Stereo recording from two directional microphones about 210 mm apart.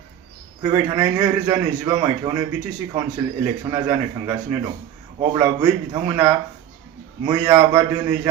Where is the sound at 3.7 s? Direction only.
15° right (ahead or behind).